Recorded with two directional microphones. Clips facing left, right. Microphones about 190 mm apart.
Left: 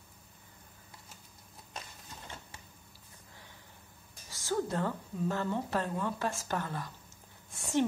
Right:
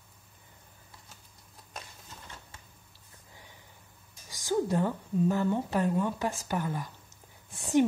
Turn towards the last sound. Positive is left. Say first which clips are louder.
# right 2 dB
turn(degrees=0)  # may be behind; listen again after turning